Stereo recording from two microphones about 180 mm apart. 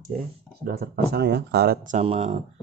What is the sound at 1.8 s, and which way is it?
Speech, 40° right (ahead or behind).